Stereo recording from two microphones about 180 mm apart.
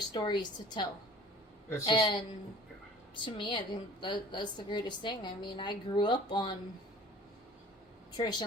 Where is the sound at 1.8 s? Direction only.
25° left (ahead or behind).